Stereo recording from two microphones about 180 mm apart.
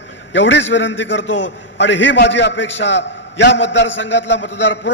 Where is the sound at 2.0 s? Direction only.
75° left (ahead or behind).